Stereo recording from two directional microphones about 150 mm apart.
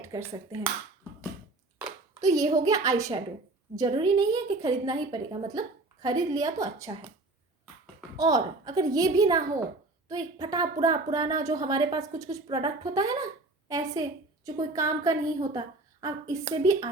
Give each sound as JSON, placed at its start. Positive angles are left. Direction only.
{"t": 0.0, "sound": "a woman's voice", "side_deg": -20}
{"t": 2.2, "sound": "a woman's voice", "side_deg": -25}
{"t": 8.1, "sound": "a woman's voice", "side_deg": -25}